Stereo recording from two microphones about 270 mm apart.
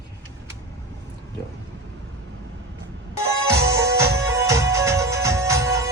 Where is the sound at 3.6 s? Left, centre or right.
Centre.